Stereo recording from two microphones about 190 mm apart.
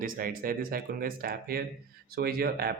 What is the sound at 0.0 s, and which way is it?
Speech, 45° right (ahead or behind).